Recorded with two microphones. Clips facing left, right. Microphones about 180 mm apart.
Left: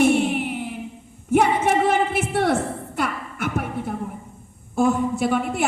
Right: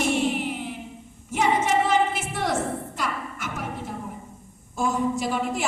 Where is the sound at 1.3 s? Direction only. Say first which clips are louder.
Left 4 dB; 60° left (ahead or behind).